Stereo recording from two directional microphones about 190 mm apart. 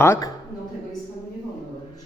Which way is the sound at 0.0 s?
15° left (ahead or behind).